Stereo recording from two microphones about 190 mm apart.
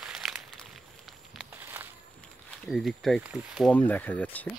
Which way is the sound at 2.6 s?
Centre (ahead or behind).